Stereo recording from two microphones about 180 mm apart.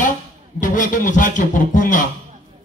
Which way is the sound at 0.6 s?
45° left (ahead or behind).